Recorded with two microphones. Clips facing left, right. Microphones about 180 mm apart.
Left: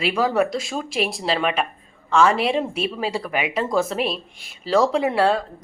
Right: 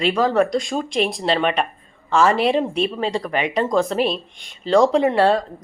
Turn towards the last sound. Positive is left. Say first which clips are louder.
# right 3 dB
turn(degrees=0)  # may be behind; listen again after turning